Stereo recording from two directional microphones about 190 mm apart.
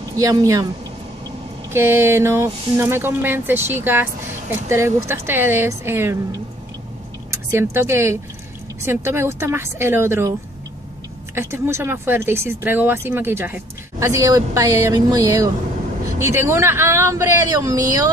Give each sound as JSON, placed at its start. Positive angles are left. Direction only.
{"t": 0.1, "sound": "speech", "side_deg": -20}
{"t": 1.7, "sound": "speech", "side_deg": -15}
{"t": 7.2, "sound": "speech", "side_deg": -15}
{"t": 11.3, "sound": "speech", "side_deg": -15}